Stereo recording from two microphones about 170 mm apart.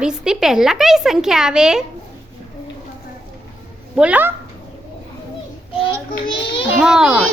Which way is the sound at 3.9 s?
5° right (ahead or behind).